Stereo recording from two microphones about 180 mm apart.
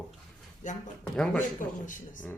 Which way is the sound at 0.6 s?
45° left (ahead or behind).